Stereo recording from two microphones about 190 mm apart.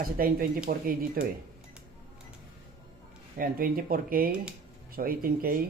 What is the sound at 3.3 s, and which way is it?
Speech, 50° right (ahead or behind).